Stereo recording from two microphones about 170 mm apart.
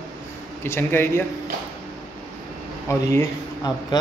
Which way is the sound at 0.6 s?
15° left (ahead or behind).